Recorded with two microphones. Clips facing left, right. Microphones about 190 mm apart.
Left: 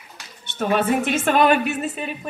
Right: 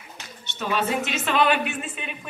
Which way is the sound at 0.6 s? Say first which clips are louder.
Left 5 dB; 55° left (ahead or behind).